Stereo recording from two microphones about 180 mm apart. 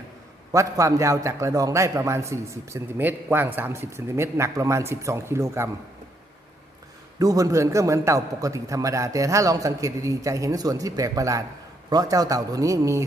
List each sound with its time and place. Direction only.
0.5 s a man's voice: 15° right (ahead or behind)
7.2 s a man's voice: 20° right (ahead or behind)